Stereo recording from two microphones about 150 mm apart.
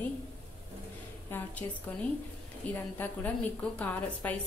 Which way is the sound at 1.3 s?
10° left (ahead or behind).